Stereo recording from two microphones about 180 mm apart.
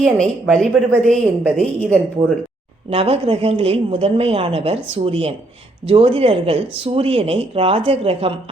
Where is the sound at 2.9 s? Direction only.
35° right (ahead or behind).